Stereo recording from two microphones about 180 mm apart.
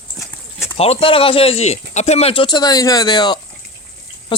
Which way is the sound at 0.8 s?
30° left (ahead or behind).